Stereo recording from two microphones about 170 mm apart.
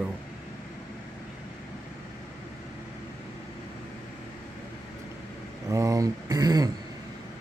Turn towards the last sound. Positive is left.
turn(degrees=-20)  # may be behind; listen again after turning